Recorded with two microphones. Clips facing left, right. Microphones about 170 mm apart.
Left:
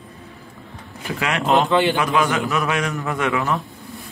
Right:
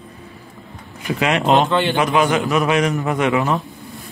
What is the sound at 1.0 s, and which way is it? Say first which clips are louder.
A man's voice: right 4 dB; 20° right (ahead or behind).